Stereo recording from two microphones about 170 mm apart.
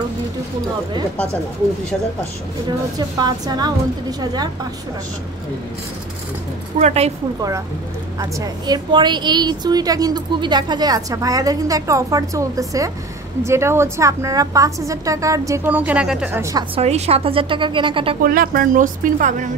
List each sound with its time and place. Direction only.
3.0 s a woman's voice: 25° right (ahead or behind)
6.8 s speech: 40° right (ahead or behind)
8.2 s a woman's voice: 25° right (ahead or behind)
16.7 s speech: 40° right (ahead or behind)
18.2 s speech: 55° right (ahead or behind)